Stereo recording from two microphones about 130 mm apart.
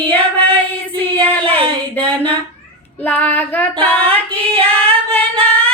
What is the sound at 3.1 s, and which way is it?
Child singing, 10° left (ahead or behind).